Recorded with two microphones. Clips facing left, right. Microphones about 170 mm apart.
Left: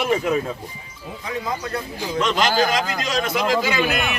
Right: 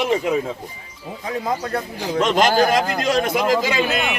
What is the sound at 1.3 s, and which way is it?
A man's voice, 45° right (ahead or behind).